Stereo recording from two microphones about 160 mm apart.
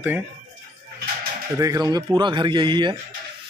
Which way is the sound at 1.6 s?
25° right (ahead or behind).